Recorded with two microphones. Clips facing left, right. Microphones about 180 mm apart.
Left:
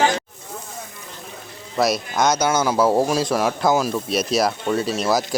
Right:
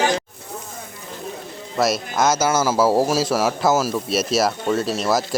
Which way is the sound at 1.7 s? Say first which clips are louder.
Even; centre (ahead or behind).